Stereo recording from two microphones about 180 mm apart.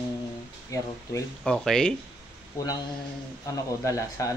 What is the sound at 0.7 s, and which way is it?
Speech, 15° left (ahead or behind).